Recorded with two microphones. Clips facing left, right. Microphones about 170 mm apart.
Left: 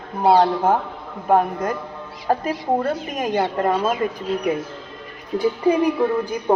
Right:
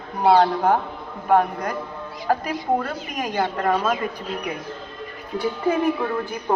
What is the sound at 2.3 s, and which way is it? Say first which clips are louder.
Speech: left 1 dB; 25° left (ahead or behind).